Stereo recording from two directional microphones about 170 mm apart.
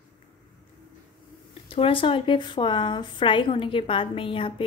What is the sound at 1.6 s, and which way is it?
Speech, 30° left (ahead or behind).